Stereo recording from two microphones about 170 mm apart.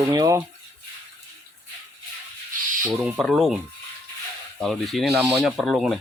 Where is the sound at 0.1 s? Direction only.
25° right (ahead or behind).